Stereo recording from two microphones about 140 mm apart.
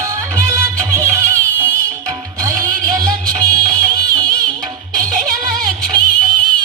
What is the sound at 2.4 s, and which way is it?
Music, 25° right (ahead or behind).